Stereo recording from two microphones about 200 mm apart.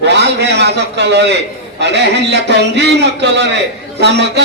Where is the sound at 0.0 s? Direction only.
60° right (ahead or behind).